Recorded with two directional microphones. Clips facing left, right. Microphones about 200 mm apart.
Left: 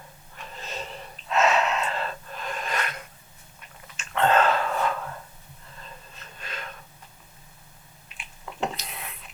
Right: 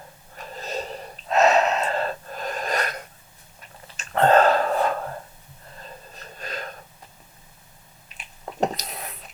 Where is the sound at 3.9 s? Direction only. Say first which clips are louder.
Right 4 dB; 40° right (ahead or behind).